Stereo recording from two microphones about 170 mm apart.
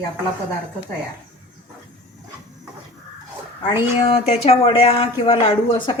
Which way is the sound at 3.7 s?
35° left (ahead or behind).